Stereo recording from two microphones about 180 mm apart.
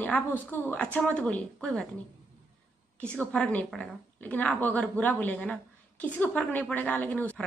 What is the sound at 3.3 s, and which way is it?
A woman's voice, 5° left (ahead or behind).